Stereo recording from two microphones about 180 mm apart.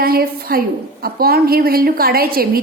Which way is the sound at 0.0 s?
55° right (ahead or behind).